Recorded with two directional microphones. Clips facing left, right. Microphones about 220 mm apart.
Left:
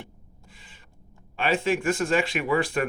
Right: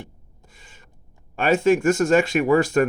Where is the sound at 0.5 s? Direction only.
45° right (ahead or behind).